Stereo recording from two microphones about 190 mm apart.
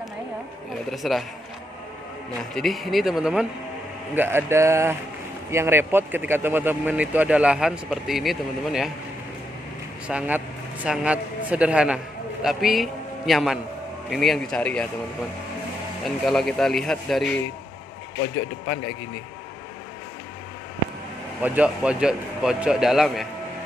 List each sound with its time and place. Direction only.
0.8 s a man's voice: centre (ahead or behind)
2.5 s a man's voice: centre (ahead or behind)
10.0 s a man's voice: 5° right (ahead or behind)
16.3 s a man's voice: centre (ahead or behind)
21.4 s a man's voice: 10° right (ahead or behind)